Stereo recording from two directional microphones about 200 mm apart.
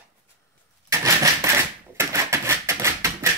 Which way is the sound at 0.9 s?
15° right (ahead or behind).